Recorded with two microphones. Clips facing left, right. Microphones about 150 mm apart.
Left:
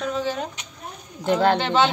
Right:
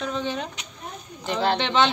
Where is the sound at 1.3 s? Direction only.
50° left (ahead or behind).